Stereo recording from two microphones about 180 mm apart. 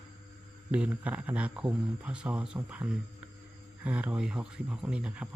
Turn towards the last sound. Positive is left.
turn(degrees=-5)  # may be behind; listen again after turning